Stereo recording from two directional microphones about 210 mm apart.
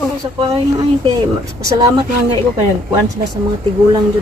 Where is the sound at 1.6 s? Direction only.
15° right (ahead or behind).